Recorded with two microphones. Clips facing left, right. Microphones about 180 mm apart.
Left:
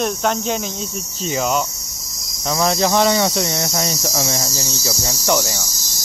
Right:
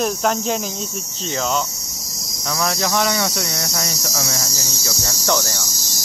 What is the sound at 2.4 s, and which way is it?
Speech, 25° left (ahead or behind).